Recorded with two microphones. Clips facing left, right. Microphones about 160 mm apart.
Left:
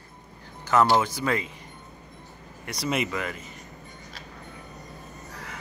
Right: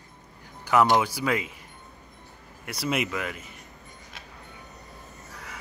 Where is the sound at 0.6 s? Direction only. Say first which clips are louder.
Even; 10° right (ahead or behind).